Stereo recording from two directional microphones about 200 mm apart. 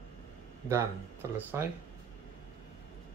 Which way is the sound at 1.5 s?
10° right (ahead or behind).